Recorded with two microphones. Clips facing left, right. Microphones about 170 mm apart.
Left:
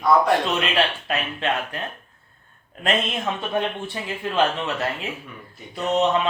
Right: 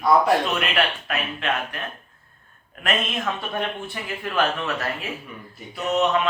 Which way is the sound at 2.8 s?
25° left (ahead or behind).